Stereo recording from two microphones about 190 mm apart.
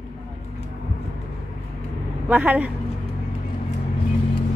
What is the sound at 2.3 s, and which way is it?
Speech, 10° right (ahead or behind).